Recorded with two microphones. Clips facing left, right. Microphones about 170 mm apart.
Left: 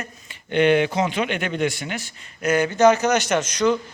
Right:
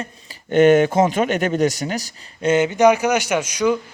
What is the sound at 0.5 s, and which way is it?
A man's voice, 45° right (ahead or behind).